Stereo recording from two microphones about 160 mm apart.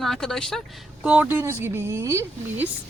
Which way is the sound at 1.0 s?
10° right (ahead or behind).